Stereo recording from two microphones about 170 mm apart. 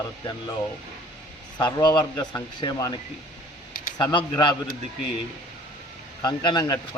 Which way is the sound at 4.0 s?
25° left (ahead or behind).